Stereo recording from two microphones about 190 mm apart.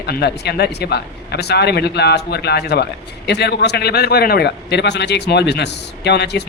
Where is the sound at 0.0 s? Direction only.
60° left (ahead or behind).